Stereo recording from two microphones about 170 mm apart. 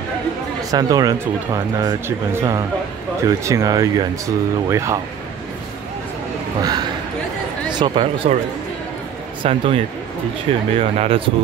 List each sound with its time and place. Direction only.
0.7 s speech: 20° right (ahead or behind)
6.6 s speech: 25° right (ahead or behind)
9.4 s speech: 35° right (ahead or behind)